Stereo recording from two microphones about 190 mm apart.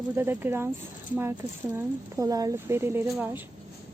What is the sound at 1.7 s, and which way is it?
Speech, 15° right (ahead or behind).